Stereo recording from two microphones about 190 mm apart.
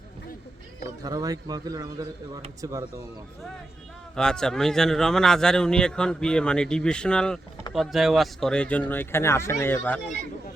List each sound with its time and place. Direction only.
1.0 s a man's voice: 20° right (ahead or behind)
4.1 s speech: 5° left (ahead or behind)